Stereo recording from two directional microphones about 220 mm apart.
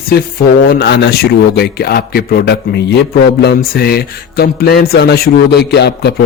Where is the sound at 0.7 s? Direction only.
45° left (ahead or behind).